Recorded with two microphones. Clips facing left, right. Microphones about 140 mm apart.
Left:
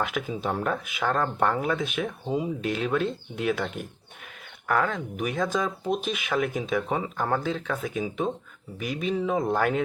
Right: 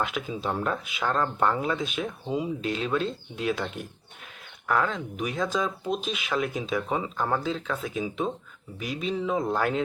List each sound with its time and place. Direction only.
0.0 s speech: 50° left (ahead or behind)
4.7 s speech: 55° left (ahead or behind)